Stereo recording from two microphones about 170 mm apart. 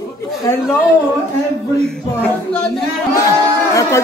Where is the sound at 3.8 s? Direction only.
15° left (ahead or behind).